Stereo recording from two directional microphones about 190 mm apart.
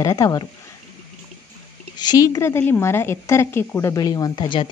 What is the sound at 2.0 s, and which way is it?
A woman's voice, 20° left (ahead or behind).